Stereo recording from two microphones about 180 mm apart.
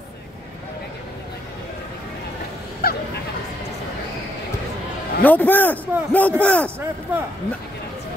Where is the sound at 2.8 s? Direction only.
60° left (ahead or behind).